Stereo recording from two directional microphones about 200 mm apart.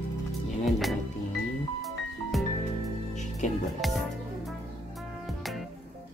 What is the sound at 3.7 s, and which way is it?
Music, centre (ahead or behind).